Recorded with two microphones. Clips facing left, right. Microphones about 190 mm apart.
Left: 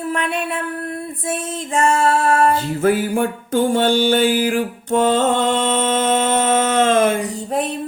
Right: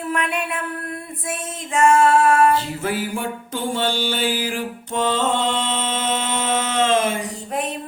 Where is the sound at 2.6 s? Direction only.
50° left (ahead or behind).